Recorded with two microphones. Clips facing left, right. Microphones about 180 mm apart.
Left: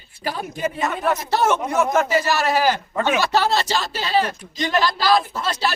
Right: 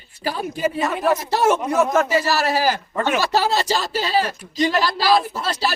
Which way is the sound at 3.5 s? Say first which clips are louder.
Right 1 dB; 40° right (ahead or behind).